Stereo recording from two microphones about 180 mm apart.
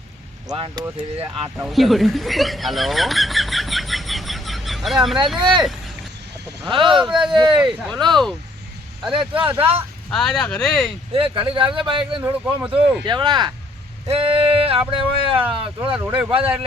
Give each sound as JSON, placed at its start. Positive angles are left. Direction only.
{"t": 0.4, "sound": "speech", "side_deg": -25}
{"t": 1.5, "sound": "speech", "side_deg": -5}
{"t": 5.4, "sound": "speech", "side_deg": -25}
{"t": 6.7, "sound": "speech", "side_deg": -25}
{"t": 7.1, "sound": "speech", "side_deg": -5}
{"t": 7.3, "sound": "speech", "side_deg": -25}
{"t": 9.6, "sound": "speech", "side_deg": -30}
{"t": 10.1, "sound": "speech", "side_deg": 0}
{"t": 11.1, "sound": "speech", "side_deg": -30}
{"t": 12.2, "sound": "speech", "side_deg": -10}
{"t": 13.1, "sound": "speech", "side_deg": -25}
{"t": 15.4, "sound": "speech", "side_deg": -5}